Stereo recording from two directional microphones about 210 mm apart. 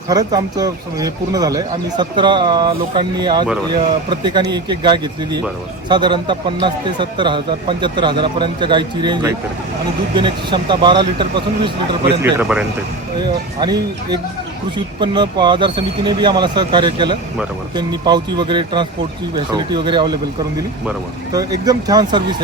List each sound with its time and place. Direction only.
0.1 s a man's voice: 20° right (ahead or behind)
12.2 s speech: 5° right (ahead or behind)
13.1 s a man's voice: 20° right (ahead or behind)
21.3 s speech: 20° right (ahead or behind)